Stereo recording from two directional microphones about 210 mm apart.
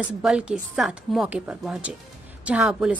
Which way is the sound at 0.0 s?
5° right (ahead or behind).